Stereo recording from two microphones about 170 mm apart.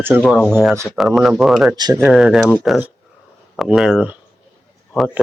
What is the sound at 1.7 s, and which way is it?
Speech, 20° right (ahead or behind).